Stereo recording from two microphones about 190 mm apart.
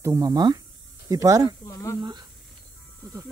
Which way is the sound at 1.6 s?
15° left (ahead or behind).